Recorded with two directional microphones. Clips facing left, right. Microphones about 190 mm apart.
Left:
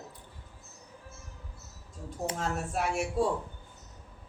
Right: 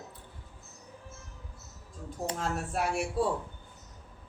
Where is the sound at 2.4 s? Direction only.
Centre (ahead or behind).